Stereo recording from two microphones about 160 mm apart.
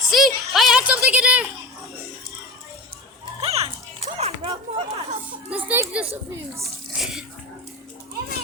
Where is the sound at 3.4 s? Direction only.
40° right (ahead or behind).